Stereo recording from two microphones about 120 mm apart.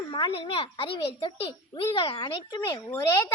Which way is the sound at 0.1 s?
45° left (ahead or behind).